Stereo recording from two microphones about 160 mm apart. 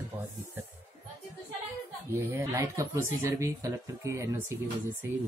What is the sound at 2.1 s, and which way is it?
A man's voice, 15° right (ahead or behind).